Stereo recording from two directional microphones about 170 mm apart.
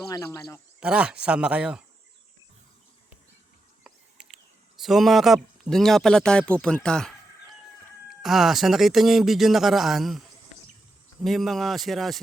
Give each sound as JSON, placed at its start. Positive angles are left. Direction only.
{"t": 0.1, "sound": "a man's voice", "side_deg": 20}
{"t": 0.8, "sound": "speech", "side_deg": -5}
{"t": 3.8, "sound": "a sound", "side_deg": 0}
{"t": 4.8, "sound": "speech", "side_deg": 0}
{"t": 8.2, "sound": "speech", "side_deg": 0}